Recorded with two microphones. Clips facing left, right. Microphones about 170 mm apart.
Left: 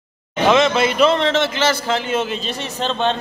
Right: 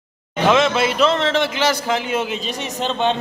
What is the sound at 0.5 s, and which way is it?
A man's voice, 5° right (ahead or behind).